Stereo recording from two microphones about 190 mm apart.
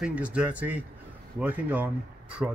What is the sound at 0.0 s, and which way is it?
Speech, 5° right (ahead or behind).